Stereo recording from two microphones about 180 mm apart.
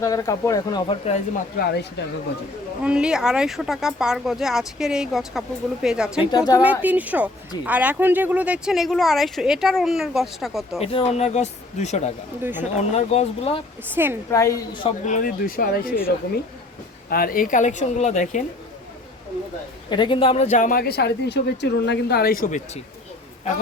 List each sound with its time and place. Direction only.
0.0 s speech: 20° left (ahead or behind)
0.9 s speech: 35° left (ahead or behind)
1.5 s speech: 65° left (ahead or behind)
2.8 s speech: 5° right (ahead or behind)
6.3 s speech: 20° left (ahead or behind)
6.6 s speech: 10° right (ahead or behind)
10.8 s speech: 35° left (ahead or behind)
12.4 s speech: 10° right (ahead or behind)
13.0 s speech: 35° left (ahead or behind)
13.9 s speech: 10° right (ahead or behind)
14.3 s a woman's voice: 15° left (ahead or behind)
15.0 s speech: 45° left (ahead or behind)
19.9 s speech: 25° left (ahead or behind); by 22.8 s 45° left (ahead or behind)